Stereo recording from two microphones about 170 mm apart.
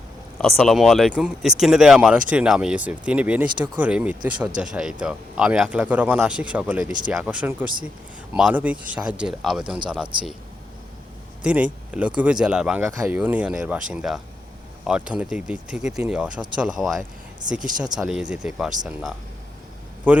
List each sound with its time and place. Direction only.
0.3 s speech: centre (ahead or behind)
10.0 s speech: 30° right (ahead or behind)
11.4 s speech: 5° right (ahead or behind)
20.1 s speech: 10° right (ahead or behind)